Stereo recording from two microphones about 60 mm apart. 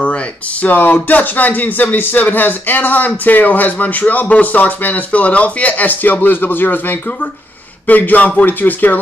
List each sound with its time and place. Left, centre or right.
0.0 s speech: left